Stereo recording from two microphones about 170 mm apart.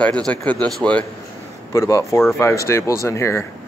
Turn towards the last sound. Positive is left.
turn(degrees=15)  # may be behind; listen again after turning